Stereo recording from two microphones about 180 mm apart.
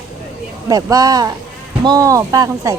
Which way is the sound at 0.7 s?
20° right (ahead or behind).